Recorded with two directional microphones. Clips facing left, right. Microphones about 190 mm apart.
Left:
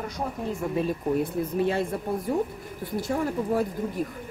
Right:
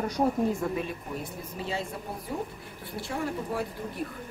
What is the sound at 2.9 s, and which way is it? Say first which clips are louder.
Speech: left 5 dB; 40° left (ahead or behind).